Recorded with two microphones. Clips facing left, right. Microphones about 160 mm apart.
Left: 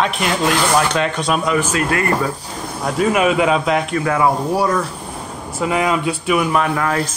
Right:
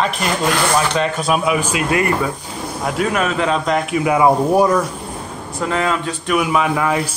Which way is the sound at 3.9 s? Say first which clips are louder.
Right 7 dB; 15° right (ahead or behind).